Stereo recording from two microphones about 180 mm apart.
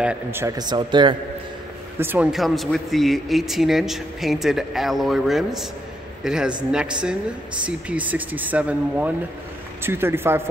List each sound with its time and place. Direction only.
0.0 s speech: 10° right (ahead or behind); by 1.1 s 25° right (ahead or behind)
2.0 s speech: 10° right (ahead or behind)
2.3 s a man's voice: centre (ahead or behind)